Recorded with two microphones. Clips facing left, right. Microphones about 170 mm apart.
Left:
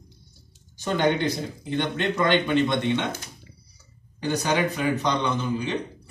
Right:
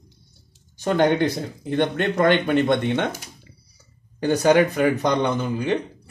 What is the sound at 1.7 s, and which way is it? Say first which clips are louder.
A man's voice: right 4 dB; 55° right (ahead or behind).